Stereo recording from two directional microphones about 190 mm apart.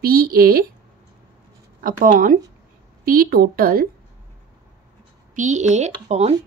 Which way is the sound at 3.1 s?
55° right (ahead or behind).